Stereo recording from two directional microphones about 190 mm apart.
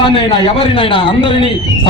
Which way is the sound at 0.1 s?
30° left (ahead or behind).